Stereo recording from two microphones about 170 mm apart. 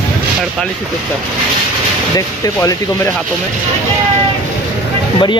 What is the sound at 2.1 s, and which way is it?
Speech, 20° left (ahead or behind).